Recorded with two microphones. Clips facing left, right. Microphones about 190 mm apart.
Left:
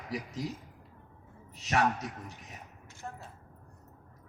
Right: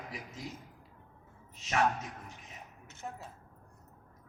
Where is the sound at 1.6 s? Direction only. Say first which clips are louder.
Left 2 dB; 35° left (ahead or behind).